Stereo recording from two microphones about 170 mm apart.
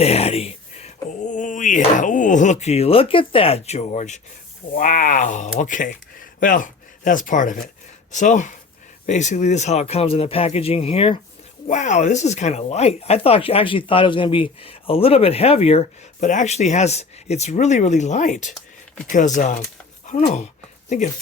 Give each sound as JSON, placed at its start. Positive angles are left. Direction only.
{"t": 0.0, "sound": "speech", "side_deg": 35}
{"t": 1.2, "sound": "speech", "side_deg": 50}